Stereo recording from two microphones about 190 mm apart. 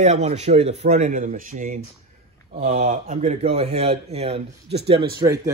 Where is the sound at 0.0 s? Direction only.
35° right (ahead or behind).